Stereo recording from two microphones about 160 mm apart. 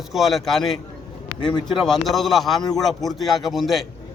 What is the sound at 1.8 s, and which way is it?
A man's voice, centre (ahead or behind).